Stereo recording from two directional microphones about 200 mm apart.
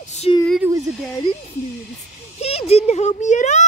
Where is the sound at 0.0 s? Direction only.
35° left (ahead or behind).